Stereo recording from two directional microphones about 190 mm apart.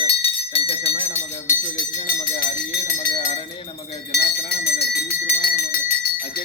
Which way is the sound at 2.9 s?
30° left (ahead or behind).